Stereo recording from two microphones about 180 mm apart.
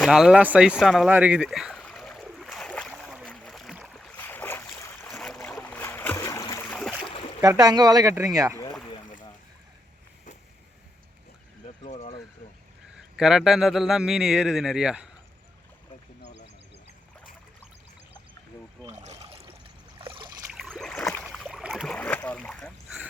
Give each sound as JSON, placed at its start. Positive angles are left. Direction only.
{"t": 0.0, "sound": "a sound", "side_deg": -5}
{"t": 5.0, "sound": "boat", "side_deg": 5}
{"t": 7.0, "sound": "boat", "side_deg": 30}
{"t": 7.4, "sound": "speech", "side_deg": -20}
{"t": 11.9, "sound": "a sound", "side_deg": 35}
{"t": 13.0, "sound": "a man's voice", "side_deg": -5}
{"t": 18.9, "sound": "trickle", "side_deg": -40}
{"t": 20.0, "sound": "a sound", "side_deg": -30}
{"t": 20.5, "sound": "boat", "side_deg": 0}
{"t": 21.9, "sound": "rowboat", "side_deg": 10}